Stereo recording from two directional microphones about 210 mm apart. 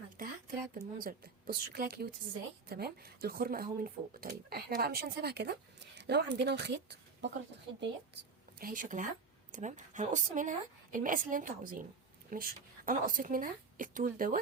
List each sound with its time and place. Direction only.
0.2 s a woman's voice: 40° right (ahead or behind)